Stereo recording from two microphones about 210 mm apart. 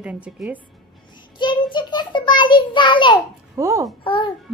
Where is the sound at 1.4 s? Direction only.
20° left (ahead or behind).